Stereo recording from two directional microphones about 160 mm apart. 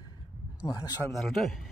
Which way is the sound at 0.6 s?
25° left (ahead or behind).